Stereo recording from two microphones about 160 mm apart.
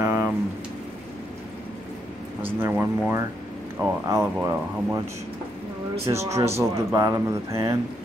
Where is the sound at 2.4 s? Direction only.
15° right (ahead or behind).